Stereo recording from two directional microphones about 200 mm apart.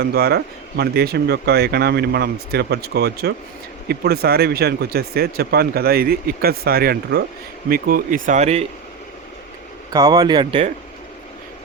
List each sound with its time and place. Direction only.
0.0 s speech: 50° right (ahead or behind)
8.3 s speech: 35° right (ahead or behind)
9.9 s speech: 20° right (ahead or behind)